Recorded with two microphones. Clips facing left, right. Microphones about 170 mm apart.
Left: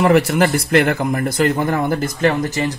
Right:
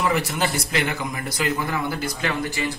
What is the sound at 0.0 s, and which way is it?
A man's voice, 65° left (ahead or behind).